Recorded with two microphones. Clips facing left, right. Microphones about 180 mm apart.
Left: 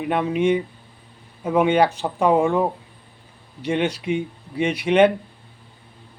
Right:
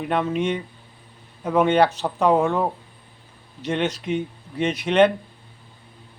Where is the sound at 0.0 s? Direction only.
10° left (ahead or behind).